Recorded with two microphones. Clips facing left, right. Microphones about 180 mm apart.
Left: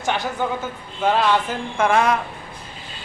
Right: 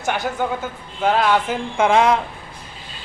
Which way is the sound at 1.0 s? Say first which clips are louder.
Right 1 dB; 5° right (ahead or behind).